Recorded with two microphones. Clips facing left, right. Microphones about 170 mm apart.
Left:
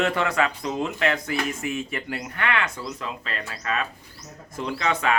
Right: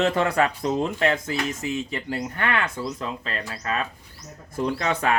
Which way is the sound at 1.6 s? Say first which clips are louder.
Right 1 dB; 20° right (ahead or behind).